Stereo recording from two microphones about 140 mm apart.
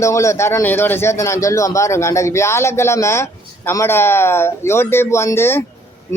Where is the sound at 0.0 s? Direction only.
20° left (ahead or behind).